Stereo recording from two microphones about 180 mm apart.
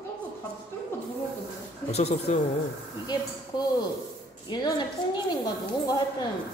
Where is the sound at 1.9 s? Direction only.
35° left (ahead or behind).